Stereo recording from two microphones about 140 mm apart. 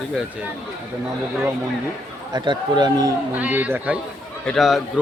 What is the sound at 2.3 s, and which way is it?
Speech, 35° right (ahead or behind).